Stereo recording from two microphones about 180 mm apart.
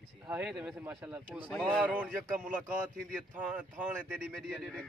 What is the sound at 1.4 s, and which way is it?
Speech, 5° left (ahead or behind).